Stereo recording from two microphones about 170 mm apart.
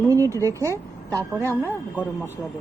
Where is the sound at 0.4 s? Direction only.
15° right (ahead or behind).